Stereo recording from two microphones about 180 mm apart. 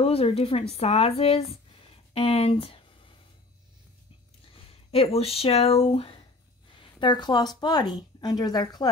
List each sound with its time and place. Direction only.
0.0 s a woman's voice: 35° left (ahead or behind)
4.9 s a woman's voice: 35° left (ahead or behind)